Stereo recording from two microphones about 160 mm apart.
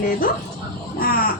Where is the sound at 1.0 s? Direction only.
65° left (ahead or behind).